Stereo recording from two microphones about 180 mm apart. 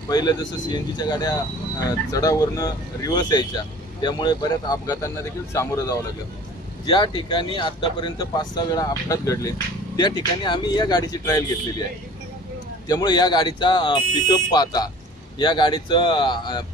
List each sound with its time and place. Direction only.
0.1 s speech: 20° left (ahead or behind)
12.8 s speech: 20° left (ahead or behind)